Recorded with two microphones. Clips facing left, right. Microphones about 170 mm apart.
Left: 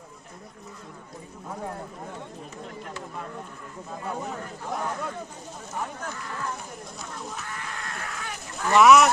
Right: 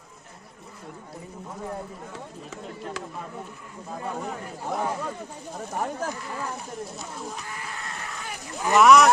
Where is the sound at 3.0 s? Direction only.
90° right.